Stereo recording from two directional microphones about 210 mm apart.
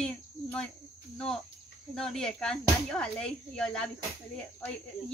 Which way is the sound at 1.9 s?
Centre (ahead or behind).